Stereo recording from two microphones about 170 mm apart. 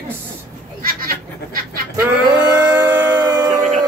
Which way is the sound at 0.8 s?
60° right (ahead or behind).